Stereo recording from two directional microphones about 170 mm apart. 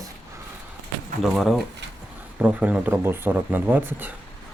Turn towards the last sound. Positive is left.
turn(degrees=-10)  # may be behind; listen again after turning